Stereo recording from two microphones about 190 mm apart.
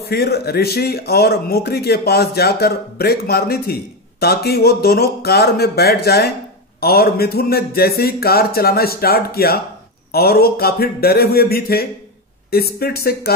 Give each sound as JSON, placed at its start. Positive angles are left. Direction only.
{"t": 0.0, "sound": "speech", "side_deg": 55}